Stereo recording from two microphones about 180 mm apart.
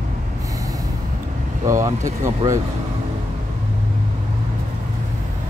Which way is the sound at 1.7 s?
15° right (ahead or behind).